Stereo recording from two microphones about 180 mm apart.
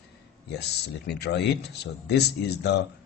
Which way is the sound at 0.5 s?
65° left (ahead or behind).